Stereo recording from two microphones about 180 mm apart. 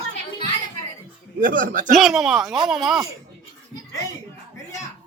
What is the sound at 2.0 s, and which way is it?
Speech, centre (ahead or behind).